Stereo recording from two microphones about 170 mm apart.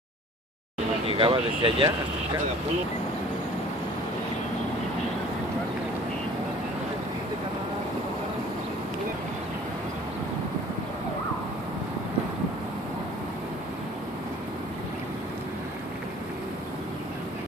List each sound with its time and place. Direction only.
1.0 s speech: 30° right (ahead or behind)